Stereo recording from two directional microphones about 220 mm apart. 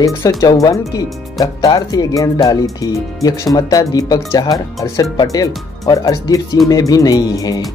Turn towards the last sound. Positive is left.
turn(degrees=15)  # may be behind; listen again after turning